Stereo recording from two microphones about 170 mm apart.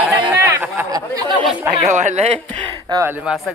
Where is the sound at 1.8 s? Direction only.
45° right (ahead or behind).